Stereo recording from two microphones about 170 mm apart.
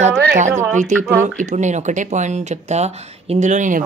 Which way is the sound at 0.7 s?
45° right (ahead or behind).